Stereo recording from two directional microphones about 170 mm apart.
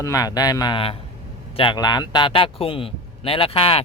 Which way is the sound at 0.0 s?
20° left (ahead or behind).